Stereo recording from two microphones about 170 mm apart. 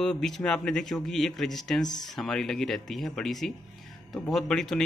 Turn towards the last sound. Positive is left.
turn(degrees=5)  # may be behind; listen again after turning